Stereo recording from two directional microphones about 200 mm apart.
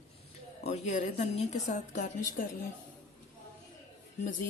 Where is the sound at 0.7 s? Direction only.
35° left (ahead or behind).